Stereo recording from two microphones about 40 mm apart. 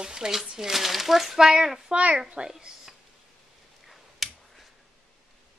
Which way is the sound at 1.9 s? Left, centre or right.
Right.